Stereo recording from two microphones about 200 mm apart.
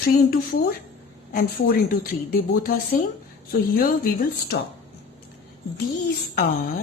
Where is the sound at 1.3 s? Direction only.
45° left (ahead or behind).